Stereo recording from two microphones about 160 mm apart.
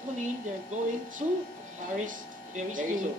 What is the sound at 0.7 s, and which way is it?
Speech, 50° right (ahead or behind).